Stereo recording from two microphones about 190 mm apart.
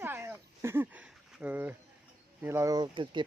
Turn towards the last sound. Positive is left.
turn(degrees=-25)  # may be behind; listen again after turning